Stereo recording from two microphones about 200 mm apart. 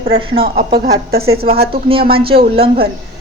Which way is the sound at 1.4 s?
50° right (ahead or behind).